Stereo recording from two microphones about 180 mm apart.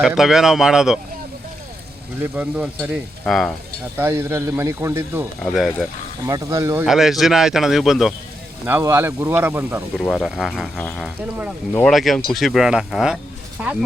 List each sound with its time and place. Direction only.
0.2 s speech: centre (ahead or behind)
2.2 s speech: 5° right (ahead or behind)
3.9 s speech: 15° right (ahead or behind)
5.4 s speech: centre (ahead or behind)
6.2 s speech: 20° right (ahead or behind)
6.8 s speech: centre (ahead or behind)
8.6 s speech: 15° right (ahead or behind)
10.1 s speech: centre (ahead or behind)